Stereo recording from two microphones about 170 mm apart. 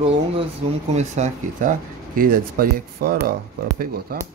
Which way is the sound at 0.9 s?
40° right (ahead or behind).